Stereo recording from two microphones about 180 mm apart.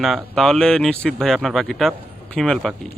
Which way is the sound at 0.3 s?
Centre (ahead or behind).